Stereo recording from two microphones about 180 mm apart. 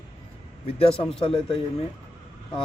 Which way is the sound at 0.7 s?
30° left (ahead or behind).